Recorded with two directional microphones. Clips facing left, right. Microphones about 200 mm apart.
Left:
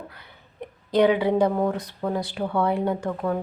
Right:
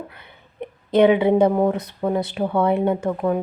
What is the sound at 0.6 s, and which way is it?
A woman's voice, 25° right (ahead or behind).